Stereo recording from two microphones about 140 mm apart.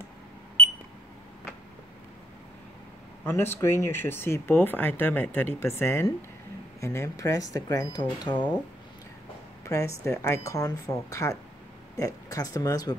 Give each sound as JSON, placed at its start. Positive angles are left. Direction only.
{"t": 3.3, "sound": "speech", "side_deg": 15}
{"t": 9.7, "sound": "speech", "side_deg": 20}